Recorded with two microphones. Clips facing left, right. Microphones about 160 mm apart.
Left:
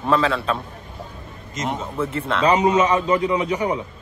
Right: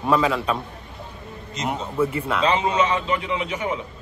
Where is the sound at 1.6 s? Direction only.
10° right (ahead or behind).